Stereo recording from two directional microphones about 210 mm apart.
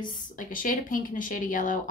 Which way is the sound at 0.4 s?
40° left (ahead or behind).